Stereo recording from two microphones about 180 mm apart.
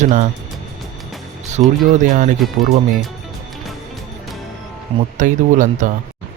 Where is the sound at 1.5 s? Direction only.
45° right (ahead or behind).